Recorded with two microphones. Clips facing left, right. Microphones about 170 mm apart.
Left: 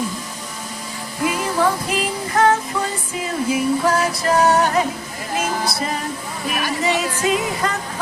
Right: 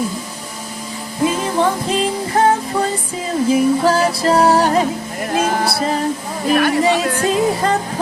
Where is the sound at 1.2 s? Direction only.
25° right (ahead or behind).